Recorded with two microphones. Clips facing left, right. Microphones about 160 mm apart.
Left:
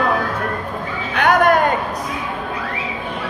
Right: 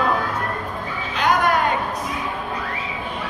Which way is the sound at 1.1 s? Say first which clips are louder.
Left 5 dB; 60° left (ahead or behind).